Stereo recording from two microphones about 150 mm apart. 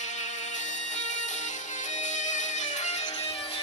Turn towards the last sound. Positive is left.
turn(degrees=40)  # may be behind; listen again after turning